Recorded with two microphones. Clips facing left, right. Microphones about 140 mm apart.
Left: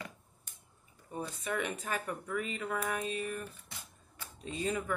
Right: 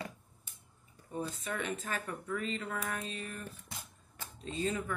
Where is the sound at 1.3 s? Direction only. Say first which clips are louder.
Left 2 dB; 15° left (ahead or behind).